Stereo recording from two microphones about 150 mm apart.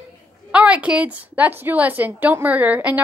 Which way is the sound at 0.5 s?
10° right (ahead or behind).